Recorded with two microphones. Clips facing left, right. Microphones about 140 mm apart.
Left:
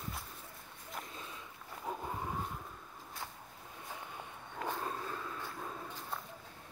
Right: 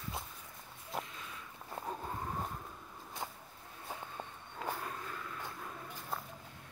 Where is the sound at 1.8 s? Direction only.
30° right (ahead or behind).